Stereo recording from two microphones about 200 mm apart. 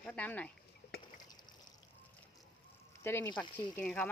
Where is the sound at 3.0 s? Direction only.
10° left (ahead or behind).